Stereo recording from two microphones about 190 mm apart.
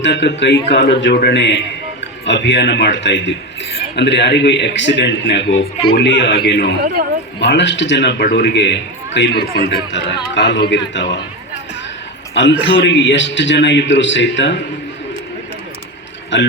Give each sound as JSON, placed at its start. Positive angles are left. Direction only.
{"t": 0.0, "sound": "a man's voice", "side_deg": 65}
{"t": 12.3, "sound": "a man's voice", "side_deg": 70}
{"t": 16.3, "sound": "a man's voice", "side_deg": 70}